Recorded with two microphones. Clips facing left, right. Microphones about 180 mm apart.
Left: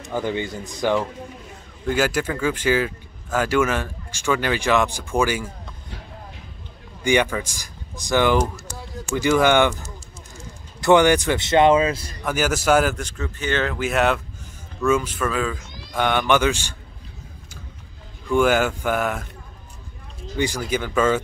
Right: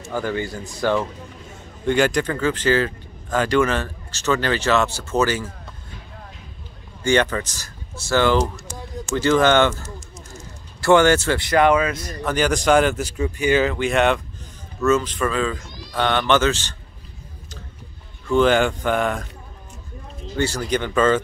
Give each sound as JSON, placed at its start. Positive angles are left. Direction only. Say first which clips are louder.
{"t": 0.0, "sound": "speech", "louder": "even", "side_deg": 20}
{"t": 1.9, "sound": "speech", "louder": "right 3 dB", "side_deg": 5}
{"t": 7.0, "sound": "speech", "louder": "right 1 dB", "side_deg": 15}
{"t": 12.2, "sound": "a man's voice", "louder": "right 3 dB", "side_deg": 10}
{"t": 13.0, "sound": "speech", "louder": "right 6 dB", "side_deg": -10}
{"t": 13.7, "sound": "a man's voice", "louder": "right 2 dB", "side_deg": 5}
{"t": 18.3, "sound": "speech", "louder": "right 2 dB", "side_deg": 10}
{"t": 20.3, "sound": "speech", "louder": "right 1 dB", "side_deg": 15}